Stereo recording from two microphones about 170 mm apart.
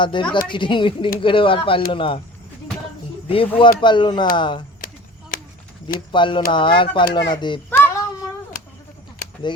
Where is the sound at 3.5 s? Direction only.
30° left (ahead or behind).